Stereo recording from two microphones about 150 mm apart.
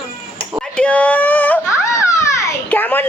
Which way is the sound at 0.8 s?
10° left (ahead or behind).